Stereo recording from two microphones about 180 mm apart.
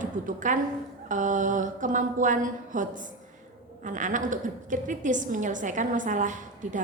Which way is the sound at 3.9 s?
45° right (ahead or behind).